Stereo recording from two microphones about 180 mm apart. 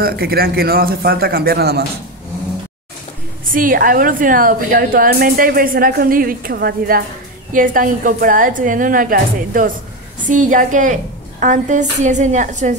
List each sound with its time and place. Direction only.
0.0 s a man's voice: 60° right (ahead or behind)
3.5 s a woman's voice: 50° right (ahead or behind)